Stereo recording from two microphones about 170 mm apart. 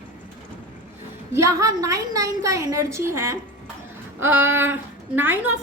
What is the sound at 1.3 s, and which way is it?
A woman's voice, 20° right (ahead or behind).